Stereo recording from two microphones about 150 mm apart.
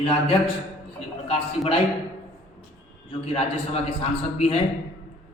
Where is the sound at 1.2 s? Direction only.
40° left (ahead or behind).